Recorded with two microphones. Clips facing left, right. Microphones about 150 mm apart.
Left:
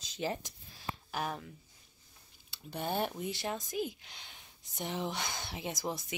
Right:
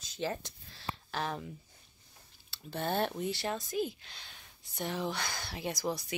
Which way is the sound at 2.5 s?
15° left (ahead or behind).